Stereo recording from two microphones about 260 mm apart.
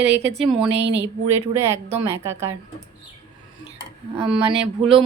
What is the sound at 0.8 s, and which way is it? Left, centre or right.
Speech, right.